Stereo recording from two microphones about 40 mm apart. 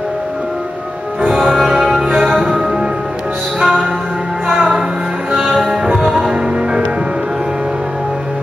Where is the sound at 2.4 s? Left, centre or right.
Right.